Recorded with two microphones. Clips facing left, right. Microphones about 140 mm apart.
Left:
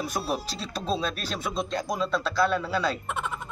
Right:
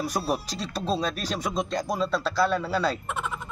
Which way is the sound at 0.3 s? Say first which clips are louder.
Right 2 dB; 35° right (ahead or behind).